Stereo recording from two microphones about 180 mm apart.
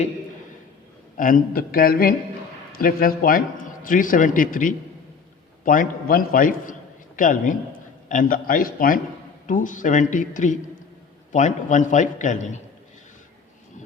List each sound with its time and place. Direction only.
1.1 s a man's voice: 50° left (ahead or behind)